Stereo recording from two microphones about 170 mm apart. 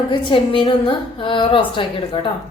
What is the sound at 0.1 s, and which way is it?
A woman's voice, 30° left (ahead or behind).